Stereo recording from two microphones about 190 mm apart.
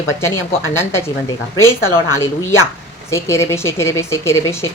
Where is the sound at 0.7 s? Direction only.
15° left (ahead or behind).